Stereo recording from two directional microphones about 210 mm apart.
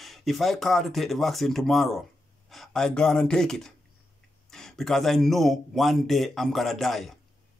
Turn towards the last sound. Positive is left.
turn(degrees=0)  # may be behind; listen again after turning